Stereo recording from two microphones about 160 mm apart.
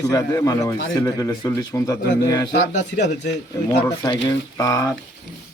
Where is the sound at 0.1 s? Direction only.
25° left (ahead or behind).